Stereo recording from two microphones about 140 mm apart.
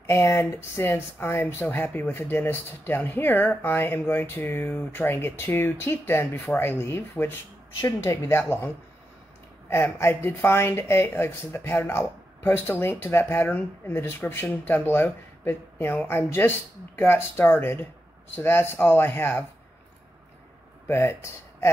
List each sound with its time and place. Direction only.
0.0 s speech: 20° left (ahead or behind)
9.7 s speech: 15° left (ahead or behind)
20.8 s speech: 15° left (ahead or behind)